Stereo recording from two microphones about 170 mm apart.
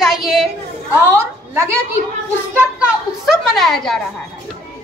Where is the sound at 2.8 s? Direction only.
Centre (ahead or behind).